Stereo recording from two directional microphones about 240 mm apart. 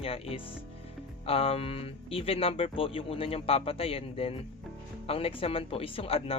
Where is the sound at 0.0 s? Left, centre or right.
Left.